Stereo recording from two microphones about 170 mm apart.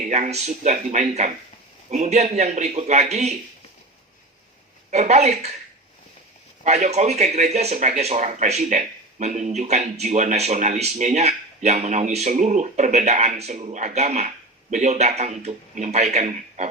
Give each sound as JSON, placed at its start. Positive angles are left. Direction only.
{"t": 0.0, "sound": "speech", "side_deg": -45}
{"t": 4.9, "sound": "speech", "side_deg": -40}
{"t": 6.7, "sound": "speech", "side_deg": -40}